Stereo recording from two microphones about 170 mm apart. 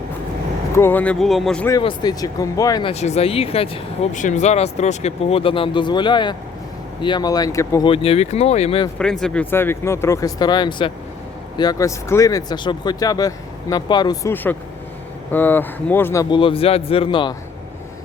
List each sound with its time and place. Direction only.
0.8 s speech: 10° left (ahead or behind)
1.8 s speech: 30° left (ahead or behind)
2.9 s speech: 40° left (ahead or behind); by 7.9 s 20° left (ahead or behind)
7.9 s speech: 35° left (ahead or behind)
9.0 s speech: 5° left (ahead or behind); by 14.3 s 25° left (ahead or behind)
15.3 s speech: 10° left (ahead or behind)
16.3 s speech: 30° left (ahead or behind)